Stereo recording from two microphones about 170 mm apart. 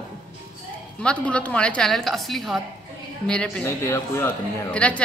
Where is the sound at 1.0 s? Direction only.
5° left (ahead or behind).